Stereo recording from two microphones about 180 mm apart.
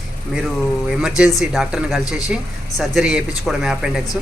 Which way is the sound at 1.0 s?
5° right (ahead or behind).